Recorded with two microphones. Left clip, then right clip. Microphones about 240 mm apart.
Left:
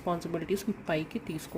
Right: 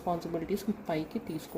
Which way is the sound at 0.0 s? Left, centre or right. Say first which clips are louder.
Even; left.